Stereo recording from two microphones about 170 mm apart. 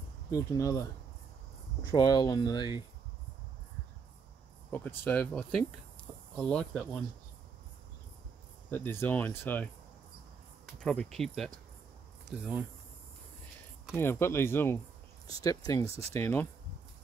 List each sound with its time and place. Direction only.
0.3 s speech: 20° left (ahead or behind)
1.9 s speech: 25° left (ahead or behind)
4.6 s speech: 10° left (ahead or behind)
8.6 s speech: 10° left (ahead or behind)
10.8 s speech: 5° left (ahead or behind)
13.9 s speech: 15° left (ahead or behind)